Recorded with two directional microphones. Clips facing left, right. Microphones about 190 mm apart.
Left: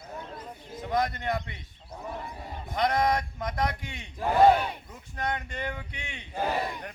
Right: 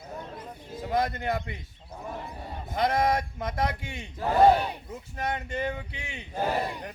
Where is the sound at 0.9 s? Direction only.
25° right (ahead or behind).